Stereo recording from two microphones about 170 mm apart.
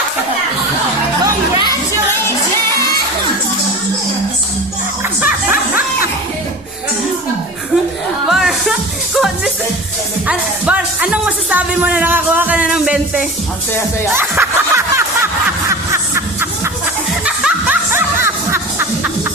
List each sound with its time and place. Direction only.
1.2 s music: 20° right (ahead or behind)
5.2 s music: 10° right (ahead or behind)
8.3 s music: centre (ahead or behind)
14.1 s snicker: 15° right (ahead or behind)
17.2 s music: 5° right (ahead or behind)